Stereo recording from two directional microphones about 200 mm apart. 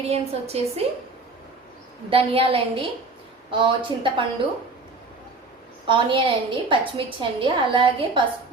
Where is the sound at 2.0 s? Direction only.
25° right (ahead or behind).